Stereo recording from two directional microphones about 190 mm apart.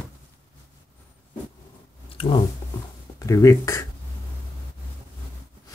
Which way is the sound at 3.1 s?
15° left (ahead or behind).